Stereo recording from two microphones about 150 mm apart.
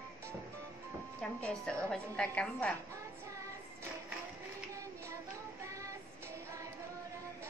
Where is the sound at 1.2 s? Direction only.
5° left (ahead or behind).